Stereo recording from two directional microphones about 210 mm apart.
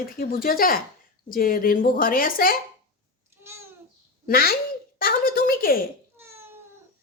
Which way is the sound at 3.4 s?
10° right (ahead or behind).